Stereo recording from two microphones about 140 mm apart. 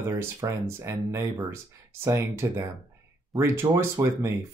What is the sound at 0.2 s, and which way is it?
Speech, 20° right (ahead or behind).